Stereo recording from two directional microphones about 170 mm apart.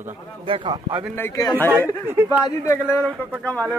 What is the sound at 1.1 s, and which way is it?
Speech, 15° left (ahead or behind).